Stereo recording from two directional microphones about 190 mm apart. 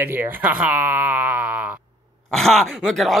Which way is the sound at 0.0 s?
10° right (ahead or behind).